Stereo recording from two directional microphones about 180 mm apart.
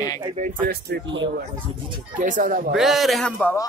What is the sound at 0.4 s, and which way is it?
Throat clearing, 50° right (ahead or behind).